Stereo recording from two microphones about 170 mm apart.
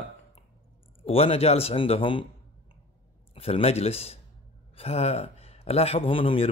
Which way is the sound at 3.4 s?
35° left (ahead or behind).